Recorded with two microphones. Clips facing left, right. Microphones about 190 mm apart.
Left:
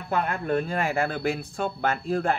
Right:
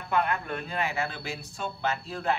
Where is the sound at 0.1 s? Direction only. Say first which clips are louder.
Left 3 dB; 45° left (ahead or behind).